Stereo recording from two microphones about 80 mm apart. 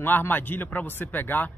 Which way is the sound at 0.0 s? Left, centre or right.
Left.